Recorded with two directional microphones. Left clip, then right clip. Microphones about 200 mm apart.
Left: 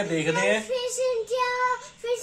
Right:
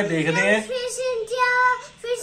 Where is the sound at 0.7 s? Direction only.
15° left (ahead or behind).